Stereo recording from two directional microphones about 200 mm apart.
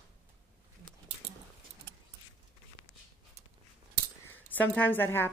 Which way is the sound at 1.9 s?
55° right (ahead or behind).